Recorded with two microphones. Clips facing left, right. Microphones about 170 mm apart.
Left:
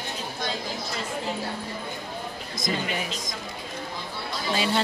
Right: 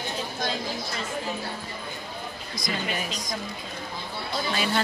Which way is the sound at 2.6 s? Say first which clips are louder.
Left 2 dB; 20° left (ahead or behind).